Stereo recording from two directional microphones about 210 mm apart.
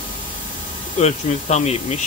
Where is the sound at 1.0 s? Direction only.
30° left (ahead or behind).